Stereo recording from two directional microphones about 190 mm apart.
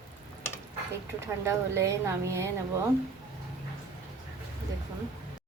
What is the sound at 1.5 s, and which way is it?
Speech, 15° right (ahead or behind).